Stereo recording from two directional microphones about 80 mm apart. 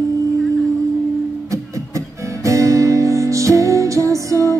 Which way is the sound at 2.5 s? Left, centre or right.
Right.